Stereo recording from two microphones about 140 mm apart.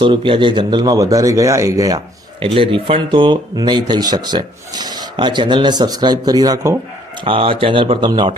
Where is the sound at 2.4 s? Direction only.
40° right (ahead or behind).